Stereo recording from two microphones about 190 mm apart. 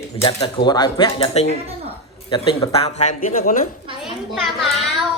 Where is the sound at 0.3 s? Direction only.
25° left (ahead or behind); by 3.7 s 45° left (ahead or behind).